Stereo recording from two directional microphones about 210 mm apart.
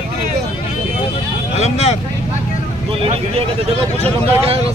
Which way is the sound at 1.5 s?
30° left (ahead or behind).